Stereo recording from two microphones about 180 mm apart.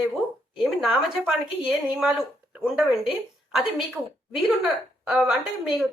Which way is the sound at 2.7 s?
Centre (ahead or behind).